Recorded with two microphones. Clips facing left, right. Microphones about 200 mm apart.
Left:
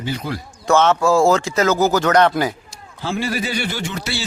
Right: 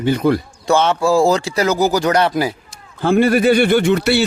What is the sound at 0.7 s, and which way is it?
A man's voice, 15° right (ahead or behind).